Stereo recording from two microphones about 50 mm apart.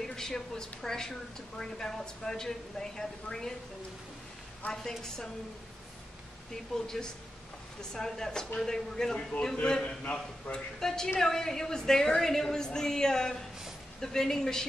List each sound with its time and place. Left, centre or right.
0.0 s a woman's voice: centre
4.6 s a woman's voice: left
6.5 s a woman's voice: centre